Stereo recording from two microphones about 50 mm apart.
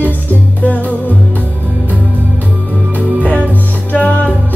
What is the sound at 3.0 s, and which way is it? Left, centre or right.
Music, left.